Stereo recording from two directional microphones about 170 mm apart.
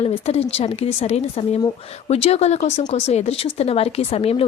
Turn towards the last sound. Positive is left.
turn(degrees=35)  # may be behind; listen again after turning